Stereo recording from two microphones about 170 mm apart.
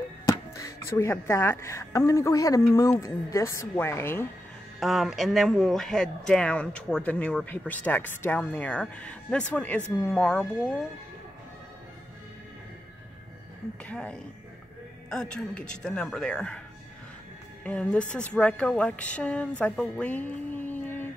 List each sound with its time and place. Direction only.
0.3 s speech: 20° left (ahead or behind)
4.7 s speech: centre (ahead or behind)
13.8 s speech: 5° left (ahead or behind)
17.6 s speech: 5° left (ahead or behind)